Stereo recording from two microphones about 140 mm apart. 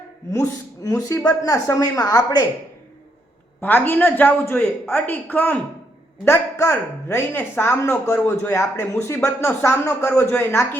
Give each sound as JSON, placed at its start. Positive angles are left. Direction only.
{"t": 0.3, "sound": "a man's voice", "side_deg": 20}
{"t": 3.6, "sound": "speech", "side_deg": 10}